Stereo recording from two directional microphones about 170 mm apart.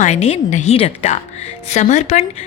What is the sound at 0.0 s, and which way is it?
A woman's voice, 40° left (ahead or behind).